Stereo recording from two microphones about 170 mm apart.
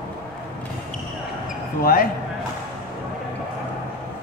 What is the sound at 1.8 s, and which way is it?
Speech, 60° left (ahead or behind).